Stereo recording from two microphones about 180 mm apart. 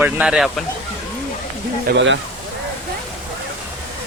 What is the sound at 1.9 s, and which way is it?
Speech, 90° right.